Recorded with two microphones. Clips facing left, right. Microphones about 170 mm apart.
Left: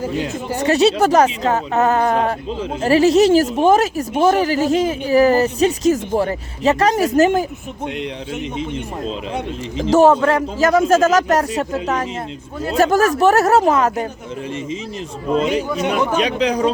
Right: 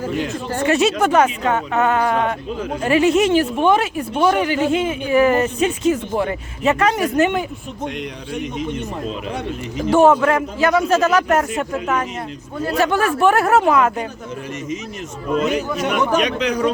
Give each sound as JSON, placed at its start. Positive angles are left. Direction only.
{"t": 0.6, "sound": "speech", "side_deg": 35}
{"t": 9.9, "sound": "speech", "side_deg": 35}
{"t": 15.3, "sound": "a man's voice", "side_deg": 30}